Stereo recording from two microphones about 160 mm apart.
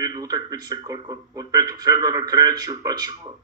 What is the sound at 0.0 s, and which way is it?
A man's voice, 25° right (ahead or behind).